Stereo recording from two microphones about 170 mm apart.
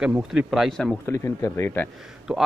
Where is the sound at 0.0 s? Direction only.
5° right (ahead or behind).